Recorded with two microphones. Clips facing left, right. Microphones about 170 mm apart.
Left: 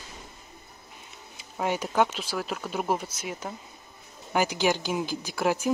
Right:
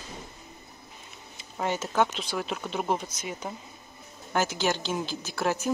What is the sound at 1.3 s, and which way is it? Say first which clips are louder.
A woman's voice: left 1 dB; 10° left (ahead or behind).